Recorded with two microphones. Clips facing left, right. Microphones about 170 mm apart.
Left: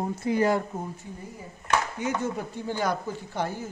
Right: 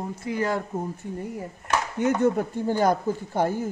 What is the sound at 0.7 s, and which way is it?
Speech, 10° right (ahead or behind).